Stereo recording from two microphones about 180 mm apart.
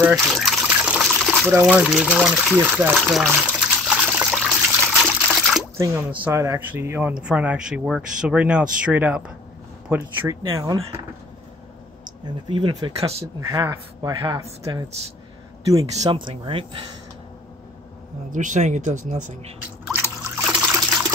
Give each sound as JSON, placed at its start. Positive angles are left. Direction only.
{"t": 0.0, "sound": "liquid", "side_deg": 0}
{"t": 1.5, "sound": "speech", "side_deg": -10}
{"t": 2.8, "sound": "water", "side_deg": -5}
{"t": 5.8, "sound": "speech", "side_deg": -15}
{"t": 12.4, "sound": "speech", "side_deg": -25}
{"t": 13.5, "sound": "speech", "side_deg": -20}
{"t": 18.3, "sound": "speech", "side_deg": -45}
{"t": 20.4, "sound": "trickle", "side_deg": -5}